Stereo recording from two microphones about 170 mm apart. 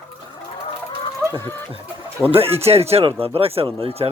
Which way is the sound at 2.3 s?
35° right (ahead or behind).